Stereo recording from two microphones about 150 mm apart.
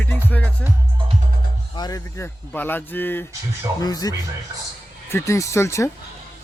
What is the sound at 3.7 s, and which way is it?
Speech, 25° left (ahead or behind).